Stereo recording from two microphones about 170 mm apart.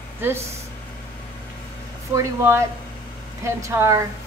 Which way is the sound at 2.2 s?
15° right (ahead or behind).